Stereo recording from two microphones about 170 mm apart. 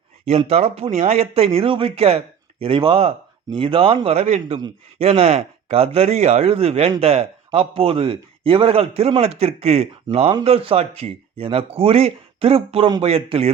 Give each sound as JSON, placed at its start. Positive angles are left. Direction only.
{"t": 0.3, "sound": "speech", "side_deg": -40}